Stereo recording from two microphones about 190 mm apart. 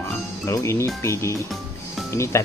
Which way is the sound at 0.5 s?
15° left (ahead or behind).